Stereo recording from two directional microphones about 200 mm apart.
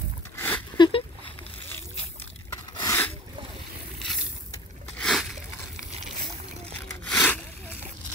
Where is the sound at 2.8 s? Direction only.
15° left (ahead or behind).